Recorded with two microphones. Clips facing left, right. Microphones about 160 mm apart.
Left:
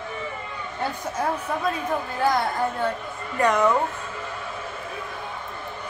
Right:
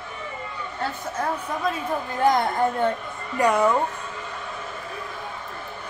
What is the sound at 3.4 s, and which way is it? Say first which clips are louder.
Speech: even; 10° right (ahead or behind).